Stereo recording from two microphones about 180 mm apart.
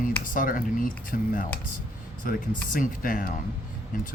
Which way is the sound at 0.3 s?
50° left (ahead or behind).